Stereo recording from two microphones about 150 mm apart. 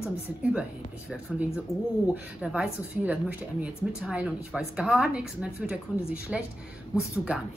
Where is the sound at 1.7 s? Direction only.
20° left (ahead or behind).